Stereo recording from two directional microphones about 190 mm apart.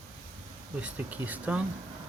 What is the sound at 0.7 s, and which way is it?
Speech, 10° right (ahead or behind).